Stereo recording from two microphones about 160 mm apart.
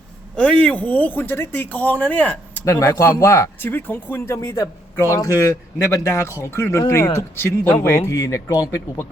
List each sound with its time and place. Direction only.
0.3 s speech: 5° left (ahead or behind)
2.6 s speech: 20° left (ahead or behind)